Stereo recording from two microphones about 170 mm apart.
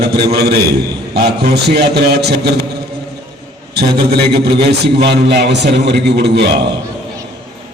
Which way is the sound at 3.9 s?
70° right (ahead or behind).